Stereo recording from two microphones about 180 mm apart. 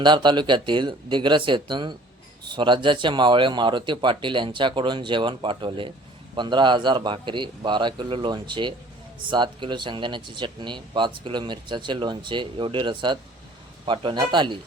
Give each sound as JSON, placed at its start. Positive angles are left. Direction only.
{"t": 0.0, "sound": "speech", "side_deg": -25}